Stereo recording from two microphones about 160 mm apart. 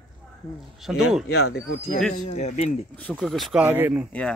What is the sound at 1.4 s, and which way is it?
Speech, 90° left.